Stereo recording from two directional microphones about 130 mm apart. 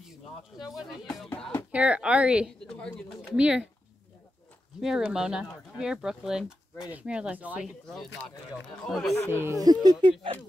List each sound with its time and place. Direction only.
0.6 s speech: 5° right (ahead or behind)
1.7 s a woman's voice: 10° right (ahead or behind)
2.6 s speech: 5° left (ahead or behind)
3.3 s a woman's voice: 10° right (ahead or behind)
4.7 s speech: 5° right (ahead or behind)
7.6 s speech: centre (ahead or behind)
9.1 s speech: 20° left (ahead or behind)
9.4 s speech: 25° right (ahead or behind)